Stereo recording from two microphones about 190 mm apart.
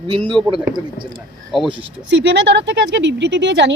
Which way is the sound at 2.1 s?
65° right (ahead or behind).